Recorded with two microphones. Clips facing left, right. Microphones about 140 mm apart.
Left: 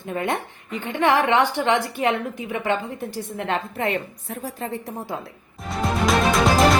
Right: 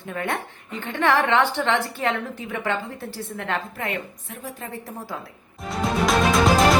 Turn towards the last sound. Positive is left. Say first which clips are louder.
# even
turn(degrees=0)  # may be behind; listen again after turning